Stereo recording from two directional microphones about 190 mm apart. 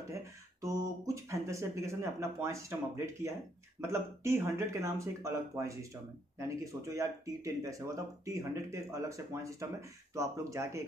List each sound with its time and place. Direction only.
0.1 s speech: 15° right (ahead or behind)